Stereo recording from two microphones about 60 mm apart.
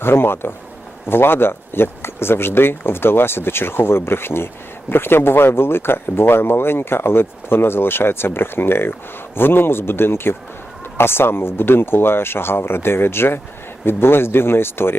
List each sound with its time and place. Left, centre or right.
0.0 s speech: left